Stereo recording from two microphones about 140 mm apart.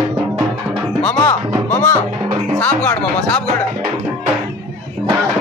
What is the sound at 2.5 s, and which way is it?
Speech, 10° left (ahead or behind).